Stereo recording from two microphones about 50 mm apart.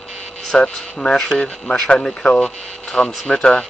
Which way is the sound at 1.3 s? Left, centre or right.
Left.